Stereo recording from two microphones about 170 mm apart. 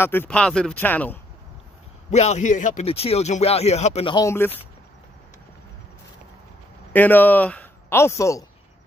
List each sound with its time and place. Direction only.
0.0 s speech: 10° left (ahead or behind)
2.0 s speech: 40° left (ahead or behind)
2.9 s speech: 35° left (ahead or behind)
6.9 s speech: 10° left (ahead or behind)